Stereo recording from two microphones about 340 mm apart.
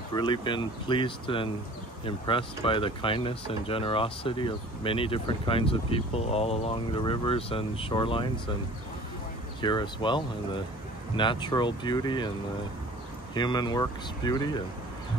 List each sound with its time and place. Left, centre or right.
0.1 s speech: centre
9.6 s speech: centre
13.3 s speech: centre